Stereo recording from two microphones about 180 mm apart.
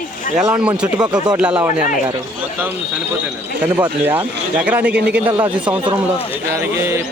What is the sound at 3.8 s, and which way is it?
A man's voice, 10° right (ahead or behind).